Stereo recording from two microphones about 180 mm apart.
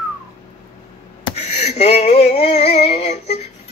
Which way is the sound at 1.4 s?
40° left (ahead or behind).